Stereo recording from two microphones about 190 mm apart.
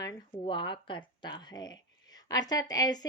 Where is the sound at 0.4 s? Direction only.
25° left (ahead or behind).